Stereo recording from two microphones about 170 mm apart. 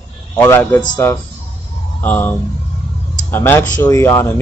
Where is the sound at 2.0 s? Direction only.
10° left (ahead or behind).